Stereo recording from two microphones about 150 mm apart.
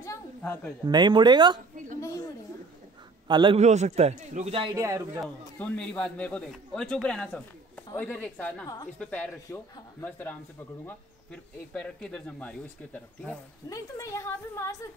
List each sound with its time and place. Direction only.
0.0 s a sound: 15° left (ahead or behind)
0.8 s speech: 30° right (ahead or behind)
2.0 s a woman's voice: 20° left (ahead or behind)
3.3 s a man's voice: 30° right (ahead or behind)
3.5 s a man's voice: 50° right (ahead or behind)
4.7 s speech: 20° right (ahead or behind)
5.6 s speech: 10° left (ahead or behind)
11.7 s speech: 5° left (ahead or behind)
13.7 s a woman's voice: 20° left (ahead or behind)